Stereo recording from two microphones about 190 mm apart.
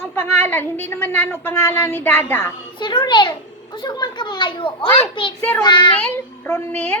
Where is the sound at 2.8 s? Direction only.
25° left (ahead or behind).